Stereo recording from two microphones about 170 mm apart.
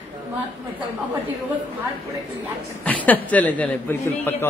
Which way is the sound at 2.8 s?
10° left (ahead or behind).